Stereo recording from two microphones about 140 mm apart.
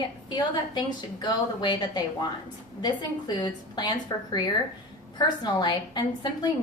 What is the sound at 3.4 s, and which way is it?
A woman's voice, 30° left (ahead or behind).